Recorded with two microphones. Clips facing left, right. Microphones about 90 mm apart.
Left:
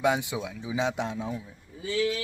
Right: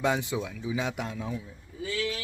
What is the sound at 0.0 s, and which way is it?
Speech, 15° left (ahead or behind).